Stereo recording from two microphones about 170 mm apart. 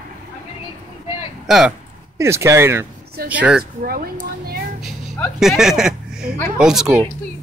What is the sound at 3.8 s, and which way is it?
Speech, 60° right (ahead or behind).